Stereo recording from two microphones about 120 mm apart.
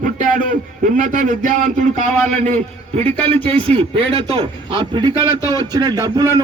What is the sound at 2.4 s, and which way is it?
Speech, 65° right (ahead or behind).